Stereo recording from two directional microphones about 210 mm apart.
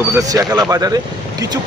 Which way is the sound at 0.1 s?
15° right (ahead or behind).